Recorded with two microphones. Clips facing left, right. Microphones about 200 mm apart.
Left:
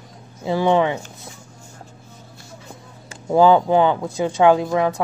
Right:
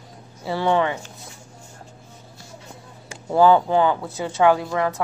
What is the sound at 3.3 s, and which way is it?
A woman's voice, 15° left (ahead or behind).